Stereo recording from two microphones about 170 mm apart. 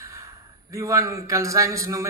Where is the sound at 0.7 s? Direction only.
15° right (ahead or behind).